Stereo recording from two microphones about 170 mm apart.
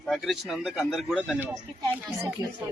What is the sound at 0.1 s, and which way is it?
Speech, centre (ahead or behind).